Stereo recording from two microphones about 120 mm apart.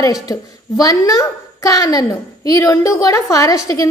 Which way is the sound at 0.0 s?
30° left (ahead or behind).